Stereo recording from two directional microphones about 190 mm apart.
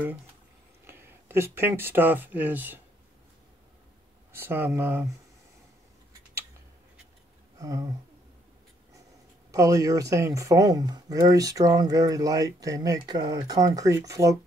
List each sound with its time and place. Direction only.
0.8 s speech: 15° right (ahead or behind)
4.3 s speech: 10° right (ahead or behind)
7.5 s a sound: 20° right (ahead or behind)
9.5 s speech: 15° right (ahead or behind)